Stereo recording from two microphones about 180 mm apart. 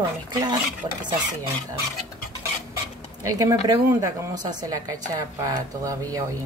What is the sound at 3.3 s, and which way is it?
A woman's voice, 20° right (ahead or behind).